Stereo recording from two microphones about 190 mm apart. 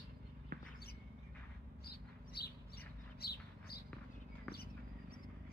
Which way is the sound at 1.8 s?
55° left (ahead or behind).